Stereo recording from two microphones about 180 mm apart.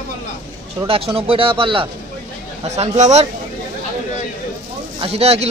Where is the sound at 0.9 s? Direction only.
30° right (ahead or behind).